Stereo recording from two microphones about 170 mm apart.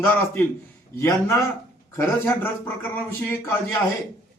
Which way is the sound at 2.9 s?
10° left (ahead or behind).